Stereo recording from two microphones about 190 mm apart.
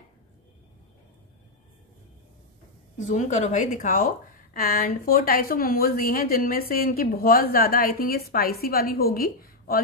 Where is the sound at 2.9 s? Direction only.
40° left (ahead or behind).